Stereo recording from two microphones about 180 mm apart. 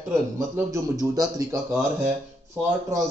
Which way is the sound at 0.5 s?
20° right (ahead or behind).